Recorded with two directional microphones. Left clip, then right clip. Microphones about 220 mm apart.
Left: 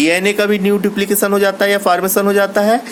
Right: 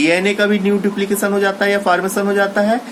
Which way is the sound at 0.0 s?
50° left (ahead or behind).